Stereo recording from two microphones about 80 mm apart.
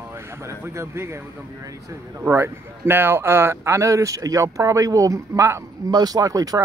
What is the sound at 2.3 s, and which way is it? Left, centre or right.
Speech, right.